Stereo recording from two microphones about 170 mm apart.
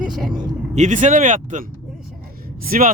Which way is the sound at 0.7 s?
45° right (ahead or behind).